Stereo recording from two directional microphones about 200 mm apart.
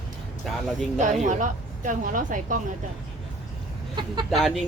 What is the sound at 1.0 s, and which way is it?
A woman's voice, 40° right (ahead or behind).